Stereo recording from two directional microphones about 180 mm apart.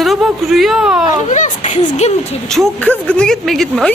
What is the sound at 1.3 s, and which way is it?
Speech, 40° left (ahead or behind).